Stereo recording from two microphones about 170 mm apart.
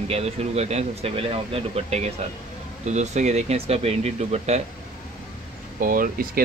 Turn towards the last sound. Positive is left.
turn(degrees=-55)  # may be behind; listen again after turning